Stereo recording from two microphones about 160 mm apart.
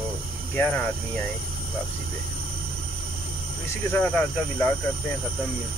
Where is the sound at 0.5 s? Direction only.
10° left (ahead or behind).